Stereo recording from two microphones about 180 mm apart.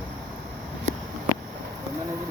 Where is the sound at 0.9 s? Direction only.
40° right (ahead or behind).